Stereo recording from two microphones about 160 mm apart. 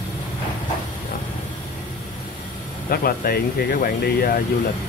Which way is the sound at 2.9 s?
65° left (ahead or behind).